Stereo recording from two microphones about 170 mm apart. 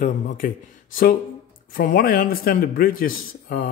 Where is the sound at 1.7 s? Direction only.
55° left (ahead or behind).